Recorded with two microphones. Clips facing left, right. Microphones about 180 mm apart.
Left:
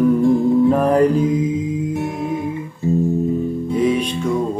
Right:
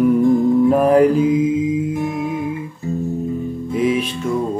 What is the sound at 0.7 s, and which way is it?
Mantra, 10° right (ahead or behind).